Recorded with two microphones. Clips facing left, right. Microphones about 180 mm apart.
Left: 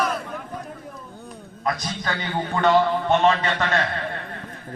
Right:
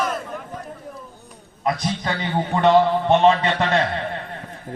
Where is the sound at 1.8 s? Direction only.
25° right (ahead or behind).